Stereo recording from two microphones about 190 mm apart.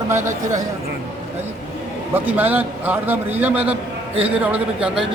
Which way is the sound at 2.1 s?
10° right (ahead or behind).